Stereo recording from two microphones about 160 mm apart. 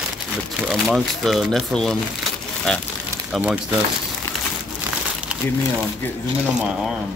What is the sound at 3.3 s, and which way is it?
Speech, 5° right (ahead or behind).